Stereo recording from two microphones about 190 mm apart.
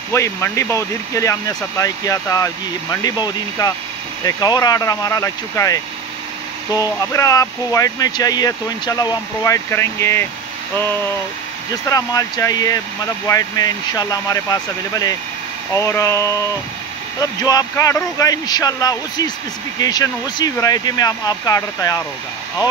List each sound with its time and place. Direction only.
0.1 s speech: 15° left (ahead or behind)
11.7 s speech: 20° left (ahead or behind)